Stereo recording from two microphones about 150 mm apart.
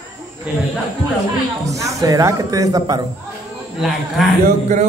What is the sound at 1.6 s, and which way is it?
A man's voice, 20° right (ahead or behind).